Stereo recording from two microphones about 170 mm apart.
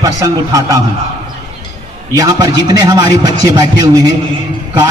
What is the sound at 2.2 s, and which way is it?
A man's voice, 20° right (ahead or behind).